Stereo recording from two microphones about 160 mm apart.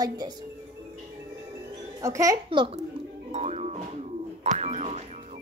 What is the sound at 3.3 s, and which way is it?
Music, 45° right (ahead or behind).